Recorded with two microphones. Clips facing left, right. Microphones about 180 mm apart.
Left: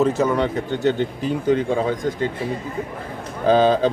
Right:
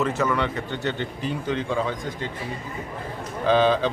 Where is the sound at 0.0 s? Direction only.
40° left (ahead or behind).